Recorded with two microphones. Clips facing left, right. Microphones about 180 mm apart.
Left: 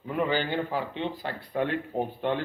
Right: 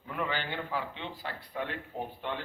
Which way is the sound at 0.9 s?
50° left (ahead or behind).